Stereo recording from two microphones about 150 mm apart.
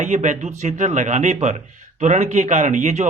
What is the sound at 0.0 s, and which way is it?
Speech, 55° right (ahead or behind).